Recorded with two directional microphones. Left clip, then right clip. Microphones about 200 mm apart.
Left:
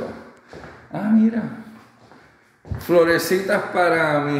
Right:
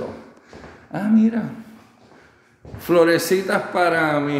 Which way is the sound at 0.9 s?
15° right (ahead or behind).